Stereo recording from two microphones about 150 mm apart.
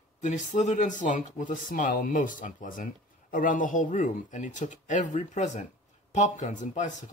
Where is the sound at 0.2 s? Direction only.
55° left (ahead or behind).